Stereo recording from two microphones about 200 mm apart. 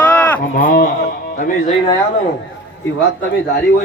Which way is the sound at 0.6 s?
45° left (ahead or behind).